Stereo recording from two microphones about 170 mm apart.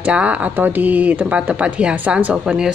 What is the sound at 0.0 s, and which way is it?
Speech, 5° right (ahead or behind).